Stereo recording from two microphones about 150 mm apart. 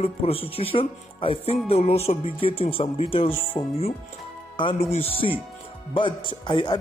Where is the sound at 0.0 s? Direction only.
40° left (ahead or behind).